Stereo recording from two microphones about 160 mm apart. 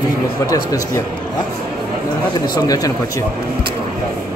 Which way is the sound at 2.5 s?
25° left (ahead or behind).